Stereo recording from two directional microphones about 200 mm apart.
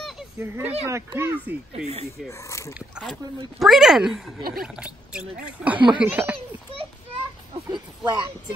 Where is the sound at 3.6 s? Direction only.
Centre (ahead or behind).